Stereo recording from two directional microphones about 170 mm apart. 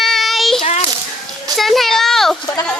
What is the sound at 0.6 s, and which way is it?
Speech, 40° left (ahead or behind).